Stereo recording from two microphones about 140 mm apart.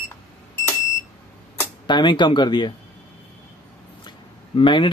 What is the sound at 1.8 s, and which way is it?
Speech, 35° left (ahead or behind).